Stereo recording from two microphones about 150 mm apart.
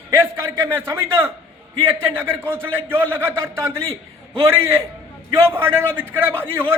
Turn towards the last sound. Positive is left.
turn(degrees=-15)  # may be behind; listen again after turning